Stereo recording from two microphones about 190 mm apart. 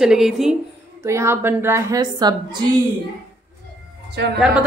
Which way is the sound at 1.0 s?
15° right (ahead or behind).